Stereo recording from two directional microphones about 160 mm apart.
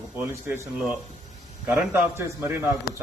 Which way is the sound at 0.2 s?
15° right (ahead or behind).